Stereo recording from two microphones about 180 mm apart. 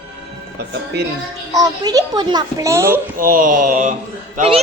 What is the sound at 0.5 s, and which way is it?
Speech, 65° right (ahead or behind).